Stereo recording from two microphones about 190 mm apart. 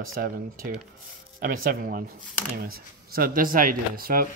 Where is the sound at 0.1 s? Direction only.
50° right (ahead or behind).